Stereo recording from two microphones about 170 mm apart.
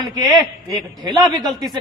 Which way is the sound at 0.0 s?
20° right (ahead or behind).